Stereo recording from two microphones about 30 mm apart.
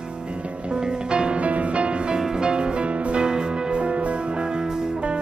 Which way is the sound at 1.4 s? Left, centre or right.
Right.